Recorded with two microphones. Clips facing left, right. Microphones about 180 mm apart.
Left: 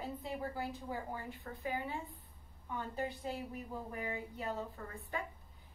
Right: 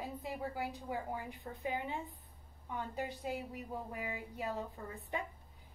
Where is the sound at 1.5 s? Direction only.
20° right (ahead or behind).